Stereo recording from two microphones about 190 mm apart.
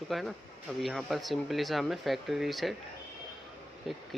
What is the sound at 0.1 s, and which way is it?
Speech, centre (ahead or behind).